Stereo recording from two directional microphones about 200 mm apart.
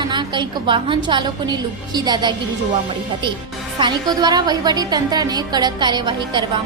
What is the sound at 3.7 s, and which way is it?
Speech, 20° right (ahead or behind).